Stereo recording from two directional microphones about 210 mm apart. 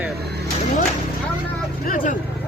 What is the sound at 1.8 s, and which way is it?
Speech, 40° left (ahead or behind).